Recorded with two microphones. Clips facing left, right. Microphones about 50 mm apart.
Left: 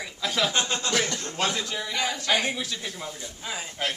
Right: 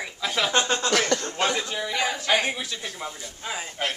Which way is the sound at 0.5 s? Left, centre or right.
Right.